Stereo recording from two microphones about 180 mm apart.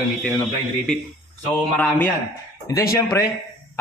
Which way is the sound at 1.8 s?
5° left (ahead or behind).